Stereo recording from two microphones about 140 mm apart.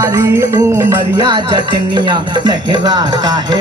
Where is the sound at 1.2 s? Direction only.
30° right (ahead or behind).